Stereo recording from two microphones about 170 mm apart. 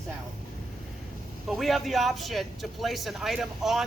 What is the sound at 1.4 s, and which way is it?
A man's voice, centre (ahead or behind).